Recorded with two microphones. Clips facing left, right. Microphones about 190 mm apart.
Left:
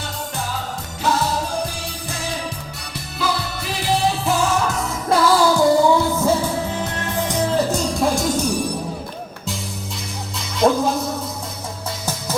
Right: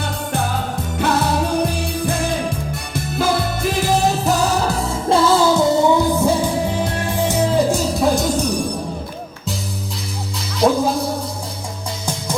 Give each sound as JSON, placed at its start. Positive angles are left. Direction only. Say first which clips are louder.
{"t": 0.0, "sound": "music", "louder": "right 6 dB", "side_deg": -60}
{"t": 10.6, "sound": "music", "louder": "right 1 dB", "side_deg": 0}